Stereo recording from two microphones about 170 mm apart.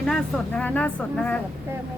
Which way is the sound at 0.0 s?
5° left (ahead or behind).